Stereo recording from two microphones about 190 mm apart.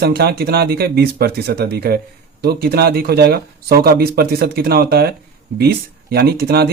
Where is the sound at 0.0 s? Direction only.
55° right (ahead or behind).